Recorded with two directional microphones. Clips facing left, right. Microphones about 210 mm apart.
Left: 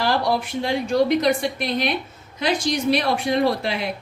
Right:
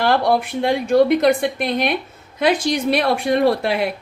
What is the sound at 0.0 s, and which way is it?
A woman's voice, 55° right (ahead or behind).